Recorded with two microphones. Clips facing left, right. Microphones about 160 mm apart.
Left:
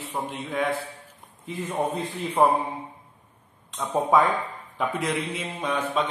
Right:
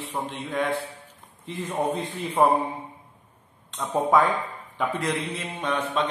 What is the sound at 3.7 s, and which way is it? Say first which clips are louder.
A man's voice: even; 10° left (ahead or behind).